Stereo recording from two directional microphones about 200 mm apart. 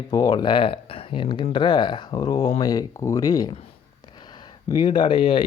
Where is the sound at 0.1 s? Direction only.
20° left (ahead or behind).